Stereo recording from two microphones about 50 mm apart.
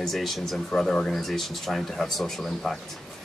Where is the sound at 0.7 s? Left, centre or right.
Centre.